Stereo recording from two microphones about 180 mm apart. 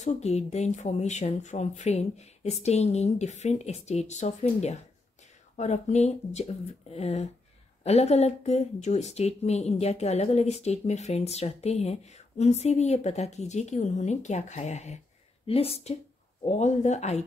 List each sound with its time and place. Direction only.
0.0 s speech: 35° left (ahead or behind)